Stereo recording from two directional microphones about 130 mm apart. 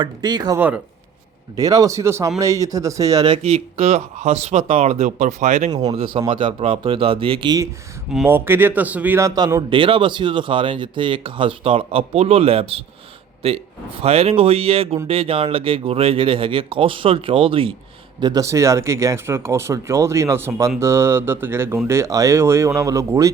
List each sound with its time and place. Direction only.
0.0 s speech: 35° right (ahead or behind)
3.2 s speech: 50° right (ahead or behind)
4.9 s speech: 75° right (ahead or behind)
5.9 s speech: 45° right (ahead or behind)
8.3 s a man's voice: 15° right (ahead or behind)
9.6 s speech: 40° right (ahead or behind)
18.2 s speech: 30° right (ahead or behind)